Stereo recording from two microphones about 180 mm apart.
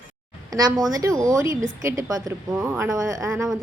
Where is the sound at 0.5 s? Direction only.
20° right (ahead or behind).